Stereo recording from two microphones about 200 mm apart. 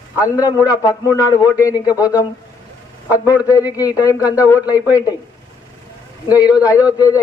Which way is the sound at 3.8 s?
15° left (ahead or behind).